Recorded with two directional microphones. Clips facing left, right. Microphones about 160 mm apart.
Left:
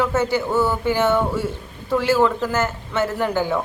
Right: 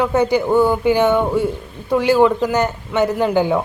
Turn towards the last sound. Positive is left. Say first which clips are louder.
# right 5 dB
turn(degrees=-15)  # may be behind; listen again after turning